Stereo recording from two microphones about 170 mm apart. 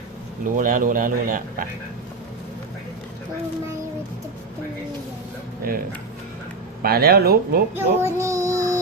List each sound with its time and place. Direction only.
0.4 s speech: 55° right (ahead or behind)
6.8 s speech: 65° right (ahead or behind)
7.8 s child singing: 15° right (ahead or behind)